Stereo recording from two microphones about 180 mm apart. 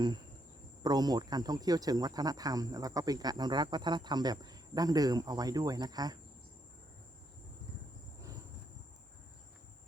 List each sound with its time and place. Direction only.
0.8 s speech: 20° right (ahead or behind)